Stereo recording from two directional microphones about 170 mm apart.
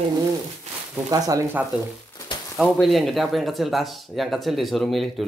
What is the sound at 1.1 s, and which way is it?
Speech, 20° right (ahead or behind).